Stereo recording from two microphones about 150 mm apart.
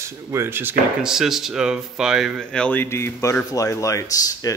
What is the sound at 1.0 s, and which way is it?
Speech, 5° right (ahead or behind).